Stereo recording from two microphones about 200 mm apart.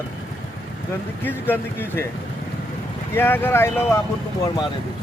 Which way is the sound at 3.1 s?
10° left (ahead or behind).